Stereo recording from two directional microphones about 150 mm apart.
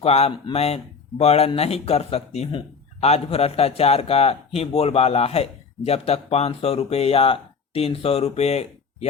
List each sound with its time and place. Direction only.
0.0 s speech: 45° left (ahead or behind)